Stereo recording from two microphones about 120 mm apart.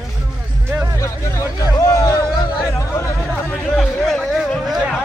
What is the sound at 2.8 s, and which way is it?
Chatter, 25° left (ahead or behind).